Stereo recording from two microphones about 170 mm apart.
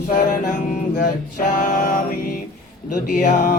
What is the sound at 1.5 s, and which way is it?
Music, 50° left (ahead or behind).